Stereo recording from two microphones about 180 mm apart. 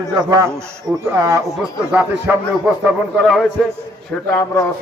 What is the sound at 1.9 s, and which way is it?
A man's voice, 10° right (ahead or behind).